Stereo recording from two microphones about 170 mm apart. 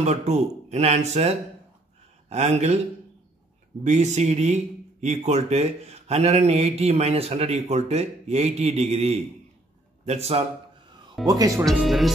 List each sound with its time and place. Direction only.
0.0 s speech: 40° right (ahead or behind)
3.8 s speech: 40° right (ahead or behind)
11.2 s speech: 20° right (ahead or behind)
11.6 s speech: centre (ahead or behind)